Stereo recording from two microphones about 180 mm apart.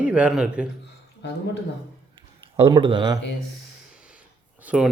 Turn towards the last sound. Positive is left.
turn(degrees=-5)  # may be behind; listen again after turning